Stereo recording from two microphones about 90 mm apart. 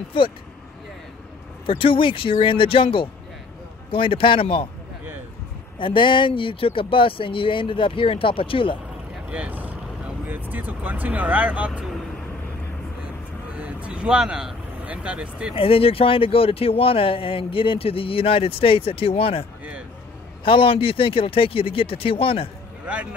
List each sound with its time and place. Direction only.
1.7 s speech: 75° left (ahead or behind)
5.8 s speech: 70° left (ahead or behind)
9.3 s speech: 15° right (ahead or behind)
13.6 s speech: 10° right (ahead or behind)
15.5 s speech: 90° left
20.4 s speech: 80° left